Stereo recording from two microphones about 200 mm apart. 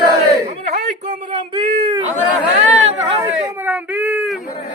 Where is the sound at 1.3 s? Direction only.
25° right (ahead or behind).